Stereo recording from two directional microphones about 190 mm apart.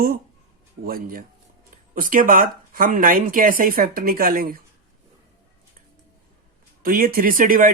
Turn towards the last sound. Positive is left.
turn(degrees=-45)  # may be behind; listen again after turning